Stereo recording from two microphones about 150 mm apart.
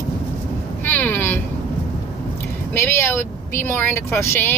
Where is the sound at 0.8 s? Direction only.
15° left (ahead or behind).